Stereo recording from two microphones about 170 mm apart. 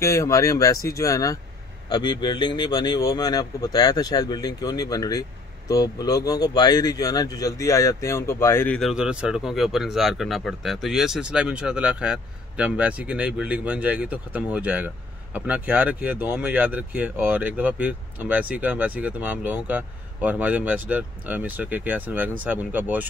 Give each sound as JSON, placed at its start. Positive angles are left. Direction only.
{"t": 0.0, "sound": "a man's voice", "side_deg": 15}